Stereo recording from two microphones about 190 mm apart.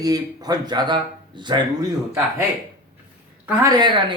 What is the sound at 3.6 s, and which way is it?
Speech, 20° right (ahead or behind).